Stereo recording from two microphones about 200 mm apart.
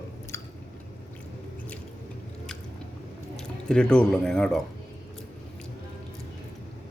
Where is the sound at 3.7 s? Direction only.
5° left (ahead or behind).